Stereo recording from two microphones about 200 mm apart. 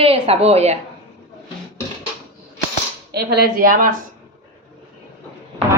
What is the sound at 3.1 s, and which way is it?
Speech, 55° right (ahead or behind).